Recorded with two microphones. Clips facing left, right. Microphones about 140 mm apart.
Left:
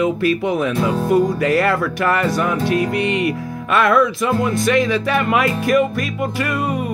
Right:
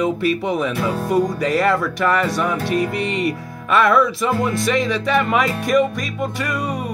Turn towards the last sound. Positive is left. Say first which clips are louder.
# left 3 dB
turn(degrees=0)  # may be behind; listen again after turning